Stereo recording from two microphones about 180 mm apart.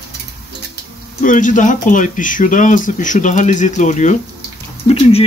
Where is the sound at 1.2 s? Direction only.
45° left (ahead or behind).